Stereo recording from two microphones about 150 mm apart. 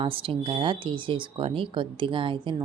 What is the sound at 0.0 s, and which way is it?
Speech, 35° right (ahead or behind).